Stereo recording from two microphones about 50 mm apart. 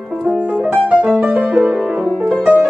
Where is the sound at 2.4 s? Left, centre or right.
Right.